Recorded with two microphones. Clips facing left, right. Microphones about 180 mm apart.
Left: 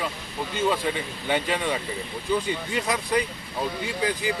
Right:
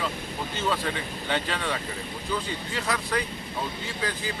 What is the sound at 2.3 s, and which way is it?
Speech, 20° left (ahead or behind).